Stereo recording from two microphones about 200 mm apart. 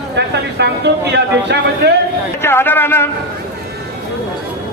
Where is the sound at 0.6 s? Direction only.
55° right (ahead or behind).